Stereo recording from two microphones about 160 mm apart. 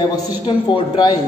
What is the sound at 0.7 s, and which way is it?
Speech, 25° left (ahead or behind).